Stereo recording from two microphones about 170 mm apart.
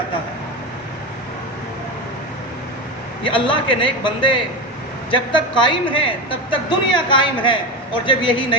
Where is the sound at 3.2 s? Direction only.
30° left (ahead or behind).